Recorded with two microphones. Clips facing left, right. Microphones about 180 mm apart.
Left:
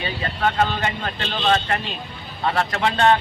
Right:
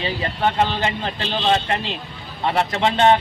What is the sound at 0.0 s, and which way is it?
A man's voice, 25° right (ahead or behind).